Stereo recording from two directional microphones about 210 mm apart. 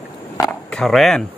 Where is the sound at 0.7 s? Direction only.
Centre (ahead or behind).